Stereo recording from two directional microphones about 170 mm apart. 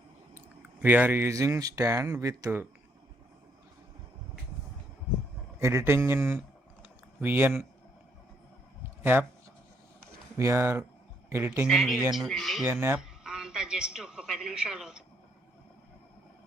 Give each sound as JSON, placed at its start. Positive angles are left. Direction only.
{"t": 0.3, "sound": "speech", "side_deg": -10}
{"t": 5.5, "sound": "speech", "side_deg": -15}
{"t": 6.8, "sound": "a sound", "side_deg": -10}
{"t": 10.3, "sound": "speech", "side_deg": -15}
{"t": 11.7, "sound": "speech", "side_deg": 0}
{"t": 12.6, "sound": "a man's voice", "side_deg": -10}